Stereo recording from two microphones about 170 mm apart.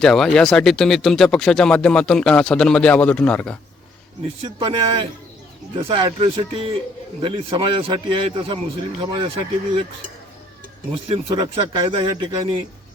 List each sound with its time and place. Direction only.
0.0 s speech: 5° left (ahead or behind)
4.4 s a man's voice: 30° right (ahead or behind)
11.1 s speech: 35° right (ahead or behind)